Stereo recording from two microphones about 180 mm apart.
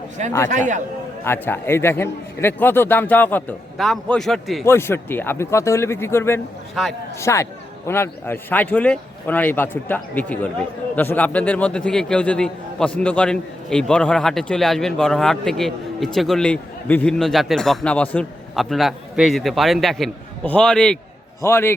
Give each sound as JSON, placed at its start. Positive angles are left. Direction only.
{"t": 0.2, "sound": "a man's voice", "side_deg": -40}
{"t": 1.2, "sound": "a man's voice", "side_deg": 10}
{"t": 4.6, "sound": "a man's voice", "side_deg": 15}